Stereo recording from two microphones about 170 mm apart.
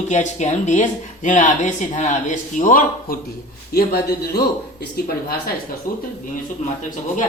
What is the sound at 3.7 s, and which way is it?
Speech, 70° left (ahead or behind).